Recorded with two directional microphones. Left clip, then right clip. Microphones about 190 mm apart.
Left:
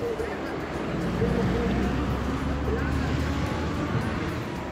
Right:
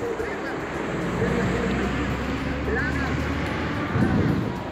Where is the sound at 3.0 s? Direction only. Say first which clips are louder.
Right 3 dB; 20° left (ahead or behind).